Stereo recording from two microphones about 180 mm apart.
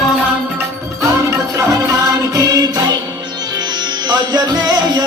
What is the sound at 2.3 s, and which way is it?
Music, 20° right (ahead or behind).